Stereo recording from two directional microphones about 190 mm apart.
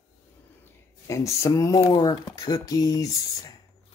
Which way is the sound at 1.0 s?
15° left (ahead or behind).